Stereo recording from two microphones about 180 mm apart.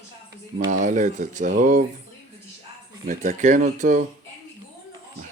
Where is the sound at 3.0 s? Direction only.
45° right (ahead or behind).